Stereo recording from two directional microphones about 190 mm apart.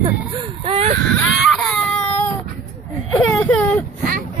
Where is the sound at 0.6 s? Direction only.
35° right (ahead or behind).